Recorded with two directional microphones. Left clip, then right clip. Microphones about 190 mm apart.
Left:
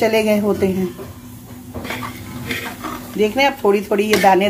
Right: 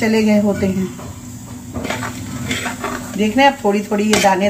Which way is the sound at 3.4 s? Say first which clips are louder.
Right 4 dB; 45° left (ahead or behind).